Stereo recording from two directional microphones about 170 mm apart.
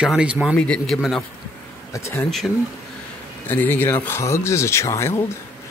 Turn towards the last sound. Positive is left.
turn(degrees=15)  # may be behind; listen again after turning